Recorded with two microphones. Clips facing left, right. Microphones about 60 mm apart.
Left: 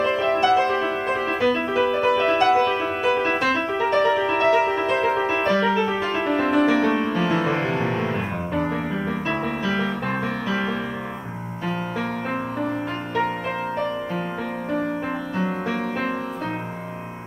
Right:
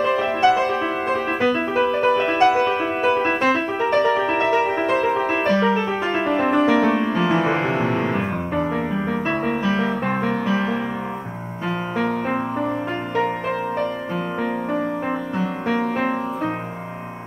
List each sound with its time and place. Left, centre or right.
0.0 s music: centre
3.8 s music: centre
5.5 s music: right; by 7.4 s centre
7.4 s music: right
9.7 s music: right